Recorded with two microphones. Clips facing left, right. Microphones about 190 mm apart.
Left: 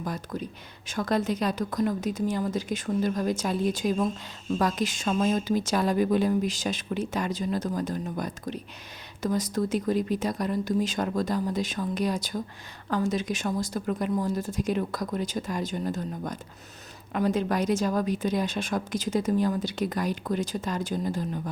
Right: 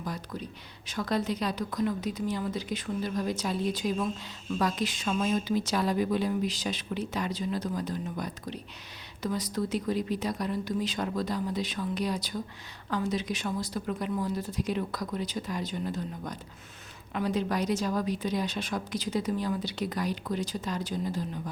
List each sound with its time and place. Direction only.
0.0 s a woman's voice: 50° left (ahead or behind)